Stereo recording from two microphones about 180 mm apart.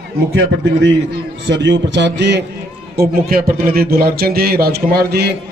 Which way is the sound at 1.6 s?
90° right.